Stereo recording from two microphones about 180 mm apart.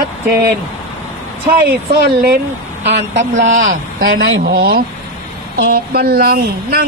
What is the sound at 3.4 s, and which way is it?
Speech, 45° right (ahead or behind).